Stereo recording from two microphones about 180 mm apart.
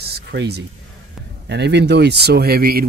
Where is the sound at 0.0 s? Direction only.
65° right (ahead or behind).